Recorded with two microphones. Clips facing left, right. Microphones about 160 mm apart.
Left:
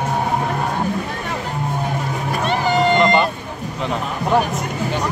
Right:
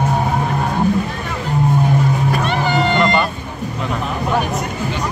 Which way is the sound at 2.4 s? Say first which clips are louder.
Left 5 dB; 40° left (ahead or behind).